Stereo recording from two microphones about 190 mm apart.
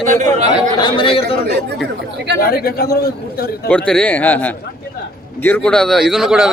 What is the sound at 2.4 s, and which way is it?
Speech, 55° left (ahead or behind).